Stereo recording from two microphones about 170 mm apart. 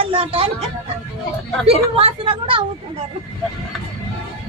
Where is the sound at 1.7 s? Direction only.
35° right (ahead or behind).